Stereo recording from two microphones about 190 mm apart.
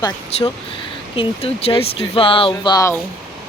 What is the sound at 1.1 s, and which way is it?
Speech, 30° left (ahead or behind).